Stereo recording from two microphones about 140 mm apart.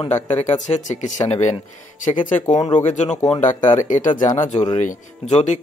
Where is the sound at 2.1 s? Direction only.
65° left (ahead or behind).